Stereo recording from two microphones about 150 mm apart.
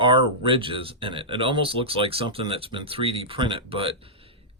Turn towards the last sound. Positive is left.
turn(degrees=-40)  # may be behind; listen again after turning